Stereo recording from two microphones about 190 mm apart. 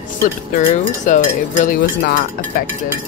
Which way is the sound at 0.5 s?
40° left (ahead or behind).